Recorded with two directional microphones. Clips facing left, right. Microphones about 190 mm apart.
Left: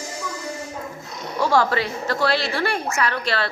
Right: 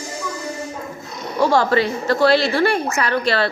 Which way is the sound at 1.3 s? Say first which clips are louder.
Right 3 dB; 20° right (ahead or behind).